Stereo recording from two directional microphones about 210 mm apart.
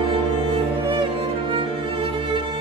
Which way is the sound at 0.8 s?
25° right (ahead or behind).